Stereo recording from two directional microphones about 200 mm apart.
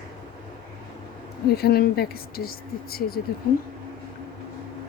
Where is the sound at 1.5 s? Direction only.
50° left (ahead or behind).